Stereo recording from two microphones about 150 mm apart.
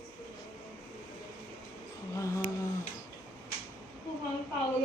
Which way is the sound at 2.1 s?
20° left (ahead or behind).